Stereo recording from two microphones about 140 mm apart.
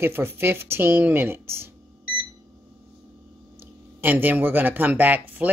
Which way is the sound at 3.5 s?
15° right (ahead or behind).